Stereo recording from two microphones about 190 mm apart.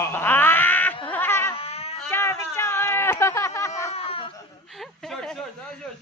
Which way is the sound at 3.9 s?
30° left (ahead or behind).